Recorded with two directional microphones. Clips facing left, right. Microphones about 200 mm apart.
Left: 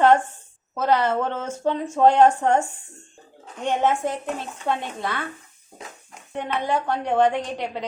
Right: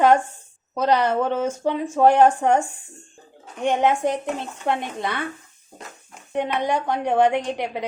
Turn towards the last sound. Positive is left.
turn(degrees=-15)  # may be behind; listen again after turning